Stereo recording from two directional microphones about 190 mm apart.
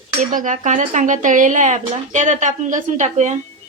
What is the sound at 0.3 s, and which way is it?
Speech, 40° right (ahead or behind).